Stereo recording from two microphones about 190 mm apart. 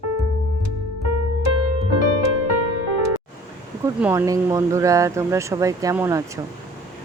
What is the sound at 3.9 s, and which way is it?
Speech, 10° right (ahead or behind).